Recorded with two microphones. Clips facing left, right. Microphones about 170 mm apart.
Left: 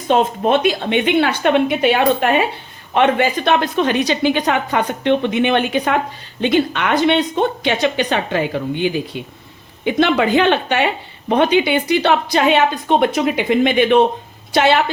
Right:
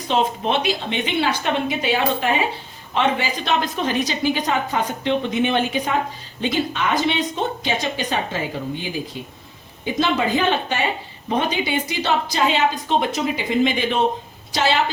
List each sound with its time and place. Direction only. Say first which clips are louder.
0.1 s a woman's voice: left 6 dB; 50° left (ahead or behind)